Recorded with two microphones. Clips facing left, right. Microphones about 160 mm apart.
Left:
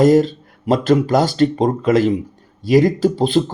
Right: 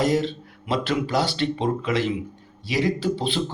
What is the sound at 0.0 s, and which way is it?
Speech, 45° left (ahead or behind).